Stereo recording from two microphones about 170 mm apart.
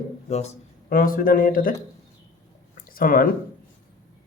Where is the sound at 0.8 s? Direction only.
55° left (ahead or behind).